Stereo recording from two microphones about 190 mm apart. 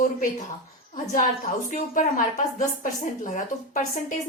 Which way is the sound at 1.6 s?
40° left (ahead or behind).